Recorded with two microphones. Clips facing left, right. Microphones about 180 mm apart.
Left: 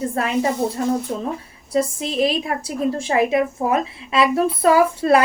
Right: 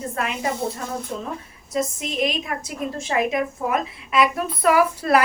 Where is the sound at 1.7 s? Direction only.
30° left (ahead or behind).